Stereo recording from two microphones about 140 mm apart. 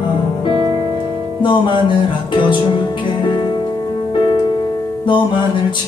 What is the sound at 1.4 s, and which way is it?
Music, 35° left (ahead or behind).